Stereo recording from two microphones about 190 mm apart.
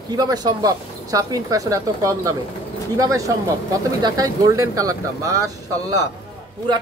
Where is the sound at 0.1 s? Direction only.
20° right (ahead or behind).